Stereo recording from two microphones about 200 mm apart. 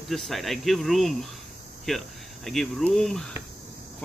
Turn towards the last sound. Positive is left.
turn(degrees=0)  # may be behind; listen again after turning